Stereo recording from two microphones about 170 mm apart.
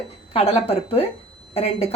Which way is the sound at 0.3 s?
35° left (ahead or behind).